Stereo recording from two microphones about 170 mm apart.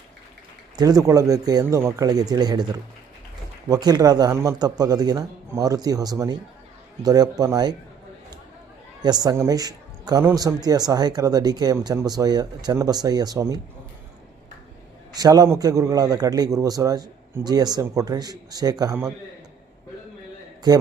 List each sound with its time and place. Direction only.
0.8 s speech: 20° right (ahead or behind)
9.0 s speech: 25° right (ahead or behind)
15.1 s speech: 20° right (ahead or behind)
20.7 s speech: 25° right (ahead or behind)